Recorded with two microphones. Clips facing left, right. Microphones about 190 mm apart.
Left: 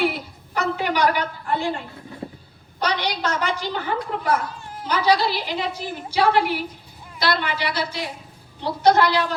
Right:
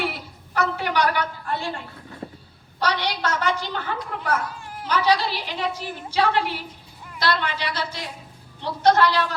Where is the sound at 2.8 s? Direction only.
15° left (ahead or behind).